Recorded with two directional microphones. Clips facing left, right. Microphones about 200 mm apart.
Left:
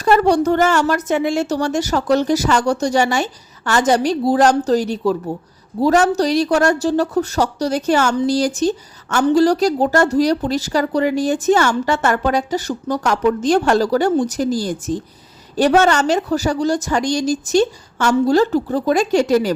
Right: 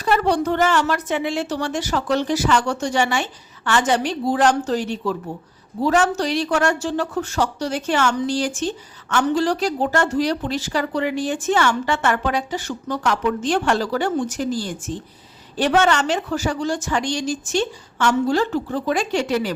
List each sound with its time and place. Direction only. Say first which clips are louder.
0.0 s speech: left 5 dB; 45° left (ahead or behind)